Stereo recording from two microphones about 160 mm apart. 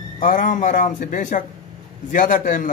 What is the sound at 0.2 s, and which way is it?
Cutlery, 55° left (ahead or behind).